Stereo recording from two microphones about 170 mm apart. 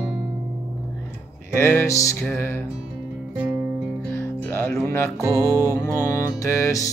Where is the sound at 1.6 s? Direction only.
15° left (ahead or behind).